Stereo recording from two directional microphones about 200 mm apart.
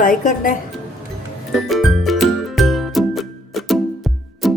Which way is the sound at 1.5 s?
Centre (ahead or behind).